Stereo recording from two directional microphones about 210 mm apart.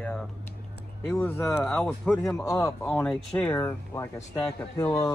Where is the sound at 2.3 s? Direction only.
15° left (ahead or behind).